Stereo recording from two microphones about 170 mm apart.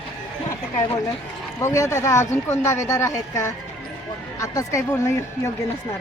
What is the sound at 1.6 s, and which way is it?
Speech, 15° left (ahead or behind).